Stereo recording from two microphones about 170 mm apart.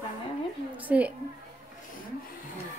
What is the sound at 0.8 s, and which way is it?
Speech, 10° right (ahead or behind).